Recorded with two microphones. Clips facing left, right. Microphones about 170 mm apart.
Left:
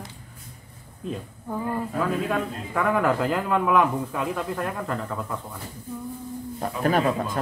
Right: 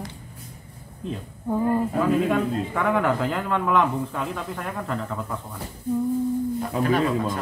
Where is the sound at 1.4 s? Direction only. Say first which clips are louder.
Right 6 dB; 15° right (ahead or behind).